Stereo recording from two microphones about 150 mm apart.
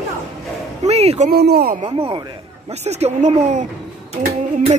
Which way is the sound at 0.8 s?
45° right (ahead or behind).